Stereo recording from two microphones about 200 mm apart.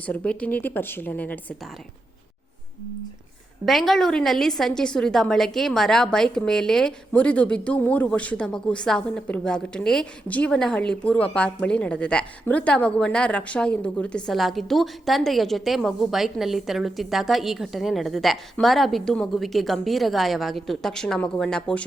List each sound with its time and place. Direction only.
0.0 s speech: 5° left (ahead or behind)
3.7 s speech: centre (ahead or behind)